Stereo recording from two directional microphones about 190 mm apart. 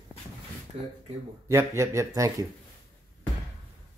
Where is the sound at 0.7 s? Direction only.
35° right (ahead or behind).